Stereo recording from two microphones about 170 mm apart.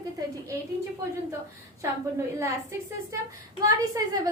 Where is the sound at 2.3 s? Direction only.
15° right (ahead or behind).